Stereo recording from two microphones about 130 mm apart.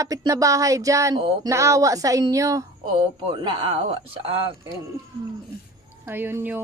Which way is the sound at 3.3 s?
40° right (ahead or behind).